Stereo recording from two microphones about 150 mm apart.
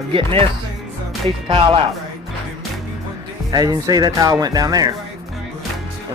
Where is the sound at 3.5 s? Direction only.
25° right (ahead or behind).